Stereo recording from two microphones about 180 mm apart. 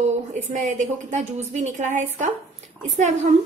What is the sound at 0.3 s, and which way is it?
A woman's voice, 45° right (ahead or behind).